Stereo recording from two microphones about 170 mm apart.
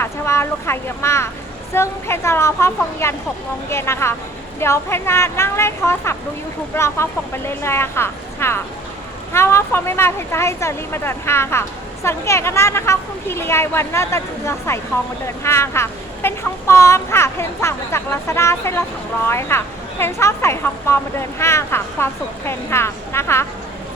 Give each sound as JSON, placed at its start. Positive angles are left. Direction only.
{"t": 0.0, "sound": "speech", "side_deg": 15}